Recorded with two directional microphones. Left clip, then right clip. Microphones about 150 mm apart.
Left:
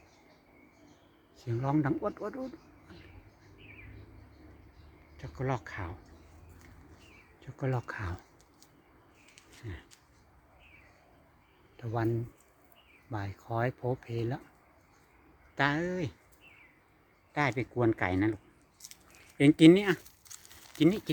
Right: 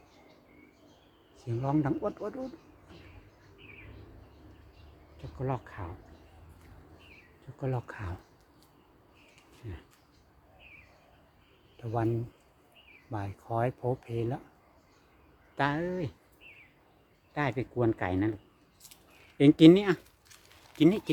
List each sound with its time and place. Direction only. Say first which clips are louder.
1.4 s speech: right 1 dB; 10° left (ahead or behind)
5.5 s speech: left 1 dB; 25° left (ahead or behind)
7.6 s speech: left 1 dB; 20° left (ahead or behind)
11.8 s speech: right 1 dB; 10° left (ahead or behind)
15.5 s speech: even; 15° left (ahead or behind)
17.6 s speech: even; 15° left (ahead or behind)
19.4 s speech: right 2 dB; 10° right (ahead or behind)
20.3 s a sound: left 5 dB; 90° left
20.7 s speech: right 2 dB; 10° right (ahead or behind)